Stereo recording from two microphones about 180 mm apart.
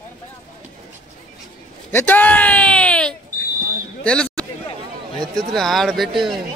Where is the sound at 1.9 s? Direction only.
10° left (ahead or behind).